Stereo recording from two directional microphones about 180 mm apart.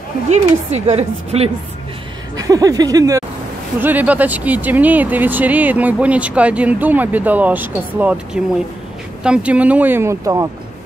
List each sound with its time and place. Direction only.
0.3 s a woman's voice: 35° right (ahead or behind)
2.3 s speech: 20° right (ahead or behind)